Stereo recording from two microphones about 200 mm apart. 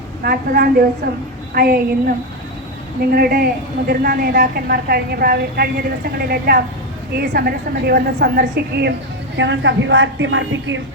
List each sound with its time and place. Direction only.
0.2 s a woman's voice: 50° right (ahead or behind)
9.4 s a woman's voice: 65° right (ahead or behind)